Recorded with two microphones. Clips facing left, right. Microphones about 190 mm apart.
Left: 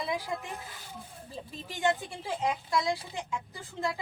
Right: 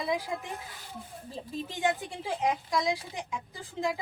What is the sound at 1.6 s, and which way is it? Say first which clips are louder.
A woman's voice: left 1 dB; 15° right (ahead or behind).